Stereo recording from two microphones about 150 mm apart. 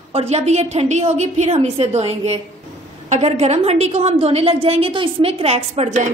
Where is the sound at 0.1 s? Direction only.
45° right (ahead or behind).